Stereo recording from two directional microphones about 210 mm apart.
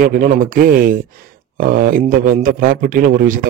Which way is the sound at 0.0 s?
40° right (ahead or behind).